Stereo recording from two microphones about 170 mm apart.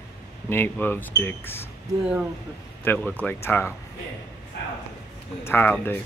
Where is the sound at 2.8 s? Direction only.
10° left (ahead or behind).